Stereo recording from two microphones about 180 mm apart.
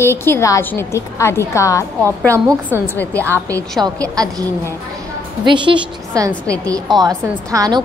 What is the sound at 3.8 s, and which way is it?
Speech, 20° right (ahead or behind).